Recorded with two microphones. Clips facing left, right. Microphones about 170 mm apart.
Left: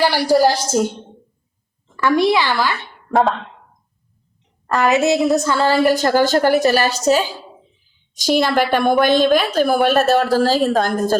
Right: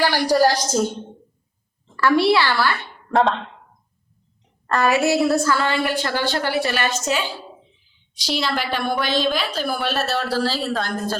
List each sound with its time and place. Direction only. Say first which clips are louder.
0.3 s a woman's voice: left 2 dB; 15° left (ahead or behind)
2.0 s a woman's voice: left 1 dB; 15° left (ahead or behind)
3.1 s speech: left 2 dB; centre (ahead or behind)
4.6 s a woman's voice: left 2 dB; 5° left (ahead or behind)
4.9 s a woman's voice: left 3 dB; 20° left (ahead or behind)
5.6 s a woman's voice: left 7 dB; 40° left (ahead or behind)
8.1 s a woman's voice: left 8 dB; 50° left (ahead or behind)